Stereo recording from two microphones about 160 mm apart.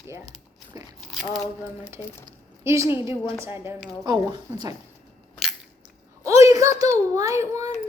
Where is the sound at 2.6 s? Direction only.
15° right (ahead or behind).